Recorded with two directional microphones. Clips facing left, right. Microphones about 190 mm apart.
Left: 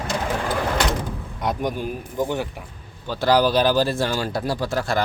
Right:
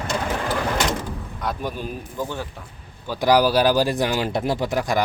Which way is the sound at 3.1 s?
10° right (ahead or behind).